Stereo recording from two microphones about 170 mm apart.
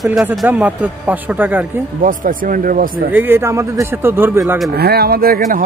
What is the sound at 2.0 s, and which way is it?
Speech, 50° right (ahead or behind).